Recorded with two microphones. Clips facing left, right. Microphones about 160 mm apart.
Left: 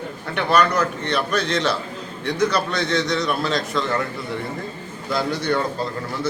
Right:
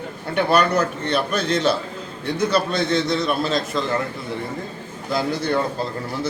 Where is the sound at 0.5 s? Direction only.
30° right (ahead or behind).